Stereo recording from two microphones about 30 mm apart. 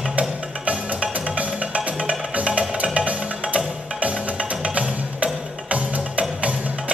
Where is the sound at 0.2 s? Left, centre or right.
Right.